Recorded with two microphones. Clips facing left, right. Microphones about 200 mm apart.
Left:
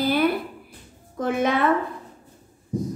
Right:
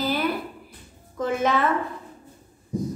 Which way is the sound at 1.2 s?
55° left (ahead or behind).